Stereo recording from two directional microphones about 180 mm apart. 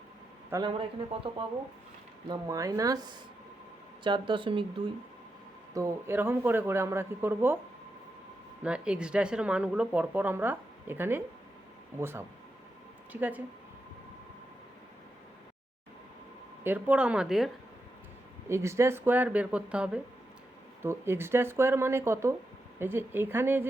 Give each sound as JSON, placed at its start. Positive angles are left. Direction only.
{"t": 0.5, "sound": "speech", "side_deg": -30}
{"t": 2.3, "sound": "speech", "side_deg": -20}
{"t": 5.7, "sound": "speech", "side_deg": -15}
{"t": 8.6, "sound": "speech", "side_deg": -5}
{"t": 16.6, "sound": "speech", "side_deg": -10}
{"t": 18.4, "sound": "speech", "side_deg": -15}